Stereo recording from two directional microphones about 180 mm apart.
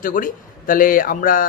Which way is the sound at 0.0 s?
50° left (ahead or behind).